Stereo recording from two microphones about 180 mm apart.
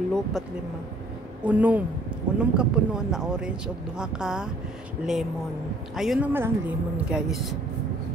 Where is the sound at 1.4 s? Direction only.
10° right (ahead or behind).